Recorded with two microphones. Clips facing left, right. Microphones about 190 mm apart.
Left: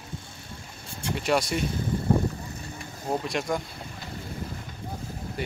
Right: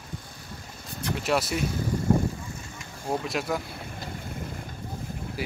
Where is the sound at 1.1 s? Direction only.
Centre (ahead or behind).